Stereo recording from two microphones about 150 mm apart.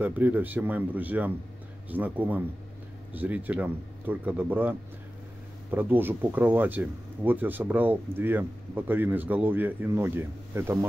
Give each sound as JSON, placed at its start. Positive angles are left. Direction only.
{"t": 0.0, "sound": "speech", "side_deg": -10}